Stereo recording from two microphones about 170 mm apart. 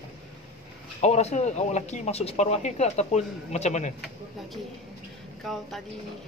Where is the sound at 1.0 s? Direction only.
40° left (ahead or behind).